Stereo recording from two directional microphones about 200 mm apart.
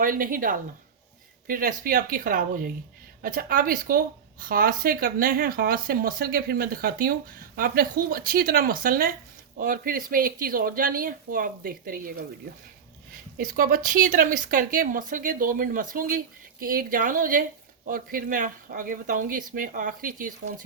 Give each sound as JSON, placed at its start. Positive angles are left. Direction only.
{"t": 0.0, "sound": "a woman's voice", "side_deg": -45}
{"t": 13.3, "sound": "a woman's voice", "side_deg": -45}